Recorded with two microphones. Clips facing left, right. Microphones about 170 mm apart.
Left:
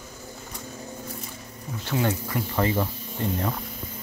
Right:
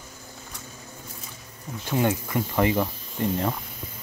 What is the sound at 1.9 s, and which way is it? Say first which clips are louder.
Speech: right 2 dB; 20° right (ahead or behind).